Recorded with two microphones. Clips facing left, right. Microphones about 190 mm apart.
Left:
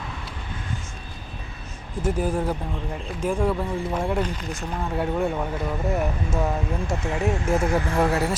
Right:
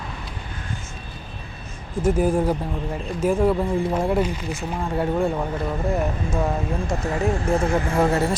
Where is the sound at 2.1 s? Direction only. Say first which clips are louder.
Right 5 dB; 10° right (ahead or behind).